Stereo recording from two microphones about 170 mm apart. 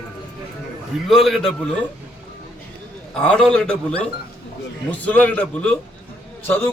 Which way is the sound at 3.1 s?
5° left (ahead or behind).